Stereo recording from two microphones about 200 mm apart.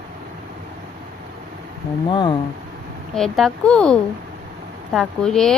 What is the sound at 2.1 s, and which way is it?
Speech, 25° left (ahead or behind).